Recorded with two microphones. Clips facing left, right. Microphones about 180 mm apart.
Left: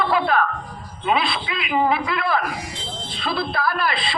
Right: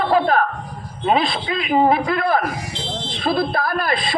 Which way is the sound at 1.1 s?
40° right (ahead or behind).